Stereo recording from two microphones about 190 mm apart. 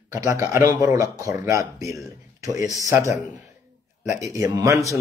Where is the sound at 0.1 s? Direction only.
15° right (ahead or behind).